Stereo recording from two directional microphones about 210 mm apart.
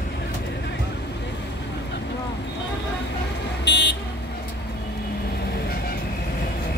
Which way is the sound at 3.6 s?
55° left (ahead or behind).